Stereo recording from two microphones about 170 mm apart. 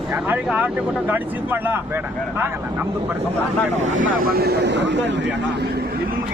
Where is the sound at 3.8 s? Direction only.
50° right (ahead or behind); by 5.2 s 90° right.